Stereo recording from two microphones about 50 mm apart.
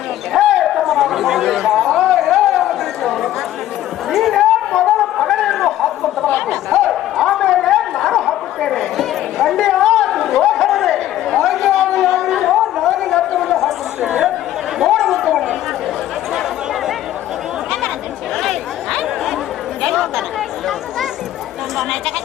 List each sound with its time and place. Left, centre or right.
0.3 s a sound: centre
6.2 s chatter: left
6.7 s chatter: centre
8.6 s a sound: centre
14.0 s chatter: centre
14.8 s chatter: centre
18.3 s chatter: centre